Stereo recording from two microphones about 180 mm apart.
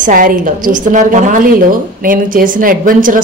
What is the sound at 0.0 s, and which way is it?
A woman's voice, 50° right (ahead or behind).